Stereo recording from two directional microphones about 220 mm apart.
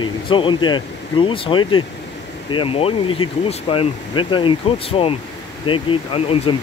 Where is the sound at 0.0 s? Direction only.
20° left (ahead or behind).